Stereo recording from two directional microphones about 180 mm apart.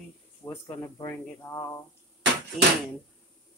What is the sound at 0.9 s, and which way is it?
Speech, 15° left (ahead or behind).